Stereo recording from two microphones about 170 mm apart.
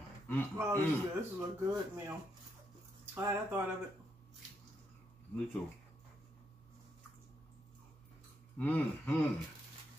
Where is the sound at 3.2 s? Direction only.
15° right (ahead or behind).